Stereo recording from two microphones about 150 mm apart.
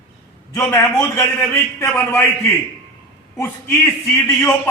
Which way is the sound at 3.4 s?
20° left (ahead or behind).